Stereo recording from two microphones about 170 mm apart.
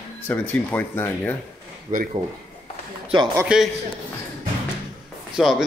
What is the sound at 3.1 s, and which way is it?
Speech, 25° right (ahead or behind).